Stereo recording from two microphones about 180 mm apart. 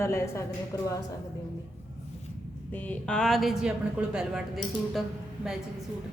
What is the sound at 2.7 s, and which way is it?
A woman's voice, 10° left (ahead or behind).